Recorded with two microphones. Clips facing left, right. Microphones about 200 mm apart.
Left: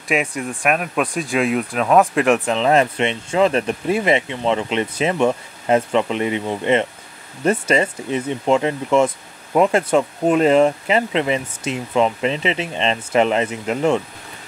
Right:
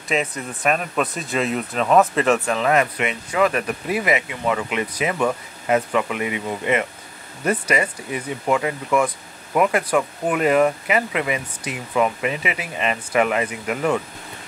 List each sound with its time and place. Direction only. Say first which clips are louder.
0.1 s speech: left 3 dB; 15° left (ahead or behind)